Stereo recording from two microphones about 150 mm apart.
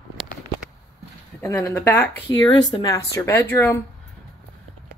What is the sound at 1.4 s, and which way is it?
Speech, 20° left (ahead or behind).